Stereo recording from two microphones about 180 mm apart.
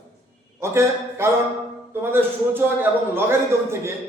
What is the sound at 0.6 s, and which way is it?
Speech, 15° right (ahead or behind).